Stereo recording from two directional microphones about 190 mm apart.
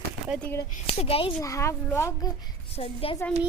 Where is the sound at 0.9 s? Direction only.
30° left (ahead or behind).